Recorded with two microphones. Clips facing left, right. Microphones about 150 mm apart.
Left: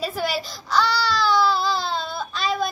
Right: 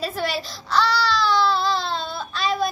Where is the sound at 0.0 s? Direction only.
Centre (ahead or behind).